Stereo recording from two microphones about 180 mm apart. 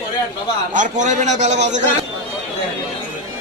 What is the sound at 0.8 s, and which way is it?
A man's voice, 45° right (ahead or behind).